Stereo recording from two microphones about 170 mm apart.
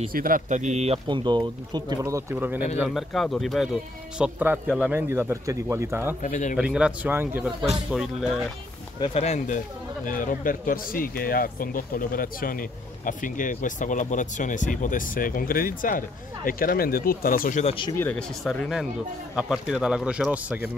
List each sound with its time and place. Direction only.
0.1 s speech: 55° right (ahead or behind); by 2.6 s 10° right (ahead or behind)
2.9 s speech: centre (ahead or behind); by 6.1 s 15° right (ahead or behind)
6.2 s speech: 45° left (ahead or behind)
6.5 s speech: 5° right (ahead or behind)
9.0 s speech: 40° left (ahead or behind)
17.9 s speech: 10° left (ahead or behind); by 20.6 s 10° right (ahead or behind)